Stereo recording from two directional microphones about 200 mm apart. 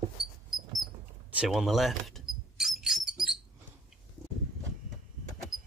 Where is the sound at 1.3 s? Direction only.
Centre (ahead or behind).